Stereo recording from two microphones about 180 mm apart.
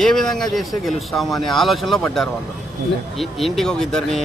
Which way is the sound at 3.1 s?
Centre (ahead or behind).